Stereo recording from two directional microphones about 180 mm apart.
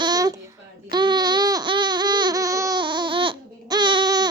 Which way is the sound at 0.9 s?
25° right (ahead or behind).